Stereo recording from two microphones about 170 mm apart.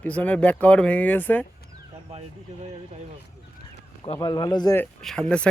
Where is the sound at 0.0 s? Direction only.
10° left (ahead or behind).